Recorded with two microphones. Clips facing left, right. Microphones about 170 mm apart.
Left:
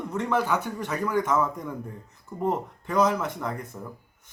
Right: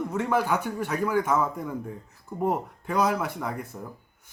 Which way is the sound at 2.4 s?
10° right (ahead or behind).